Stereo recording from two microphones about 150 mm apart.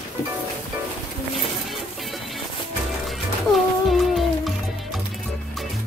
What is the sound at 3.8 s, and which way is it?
Music, centre (ahead or behind).